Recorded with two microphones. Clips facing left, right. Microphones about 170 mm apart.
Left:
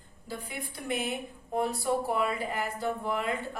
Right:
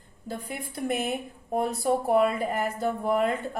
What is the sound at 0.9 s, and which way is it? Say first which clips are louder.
A woman's voice: right 2 dB; 50° right (ahead or behind).